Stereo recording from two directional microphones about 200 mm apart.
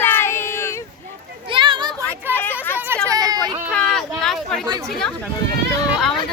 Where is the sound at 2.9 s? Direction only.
10° right (ahead or behind).